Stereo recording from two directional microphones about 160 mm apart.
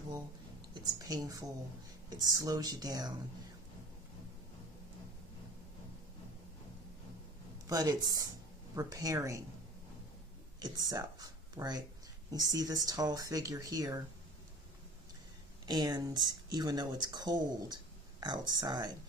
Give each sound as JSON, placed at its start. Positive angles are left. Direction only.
{"t": 0.7, "sound": "speech", "side_deg": -25}
{"t": 7.6, "sound": "speech", "side_deg": -25}
{"t": 10.6, "sound": "speech", "side_deg": -25}
{"t": 15.6, "sound": "speech", "side_deg": -25}